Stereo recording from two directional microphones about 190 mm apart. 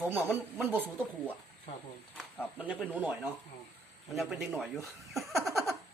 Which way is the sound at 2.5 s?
5° right (ahead or behind).